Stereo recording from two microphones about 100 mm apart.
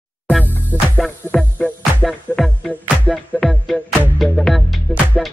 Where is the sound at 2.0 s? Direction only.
5° left (ahead or behind).